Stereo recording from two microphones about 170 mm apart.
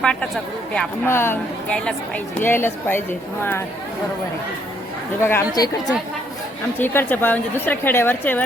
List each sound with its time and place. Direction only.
0.0 s speech: 5° left (ahead or behind)
5.2 s a woman's voice: 15° left (ahead or behind)